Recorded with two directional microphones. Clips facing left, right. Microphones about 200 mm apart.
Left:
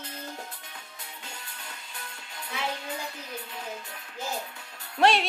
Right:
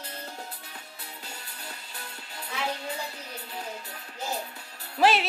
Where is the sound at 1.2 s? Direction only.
35° right (ahead or behind).